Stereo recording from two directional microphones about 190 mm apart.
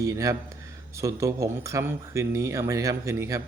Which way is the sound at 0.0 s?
15° right (ahead or behind).